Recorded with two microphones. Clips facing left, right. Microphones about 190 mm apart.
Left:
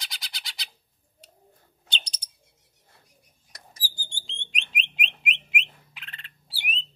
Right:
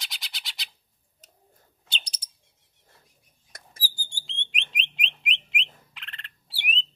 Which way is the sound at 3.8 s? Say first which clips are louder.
Even; 10° right (ahead or behind).